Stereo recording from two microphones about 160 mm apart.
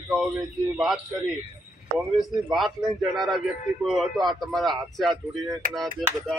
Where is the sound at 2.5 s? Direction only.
Centre (ahead or behind).